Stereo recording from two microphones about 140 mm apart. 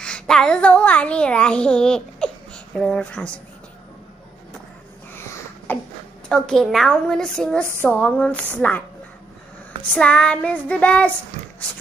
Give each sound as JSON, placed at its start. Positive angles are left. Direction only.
{"t": 0.0, "sound": "a child's voice", "side_deg": 5}
{"t": 5.1, "sound": "a sound", "side_deg": 15}
{"t": 6.2, "sound": "a woman's voice", "side_deg": 5}
{"t": 9.9, "sound": "child singing", "side_deg": 10}